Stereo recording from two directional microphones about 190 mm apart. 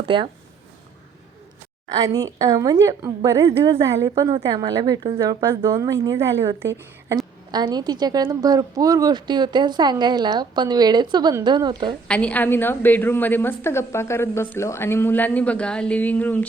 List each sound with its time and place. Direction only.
0.0 s a woman's voice: 25° right (ahead or behind)
1.9 s a woman's voice: 20° right (ahead or behind)
12.0 s a woman's voice: 5° left (ahead or behind)